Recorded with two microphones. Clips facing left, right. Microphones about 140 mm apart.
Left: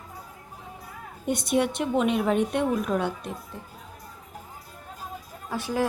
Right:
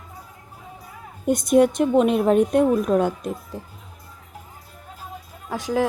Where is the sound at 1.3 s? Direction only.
45° right (ahead or behind).